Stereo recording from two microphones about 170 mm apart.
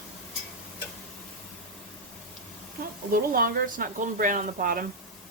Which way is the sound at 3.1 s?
55° right (ahead or behind).